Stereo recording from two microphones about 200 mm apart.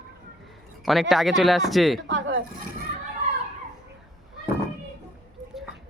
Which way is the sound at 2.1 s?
70° right (ahead or behind).